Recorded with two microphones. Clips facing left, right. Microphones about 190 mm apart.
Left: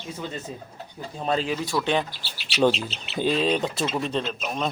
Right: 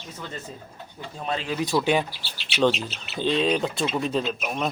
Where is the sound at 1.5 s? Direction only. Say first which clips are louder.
Right 2 dB; 20° right (ahead or behind).